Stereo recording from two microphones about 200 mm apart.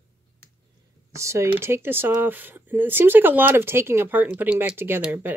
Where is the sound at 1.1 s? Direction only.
15° right (ahead or behind).